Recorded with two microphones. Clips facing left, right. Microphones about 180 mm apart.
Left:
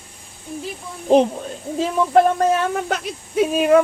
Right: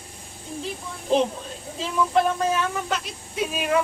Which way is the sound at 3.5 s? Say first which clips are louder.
Left 10 dB; 45° left (ahead or behind).